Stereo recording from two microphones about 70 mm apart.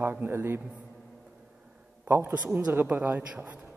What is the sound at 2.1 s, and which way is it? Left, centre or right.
A man's voice, right.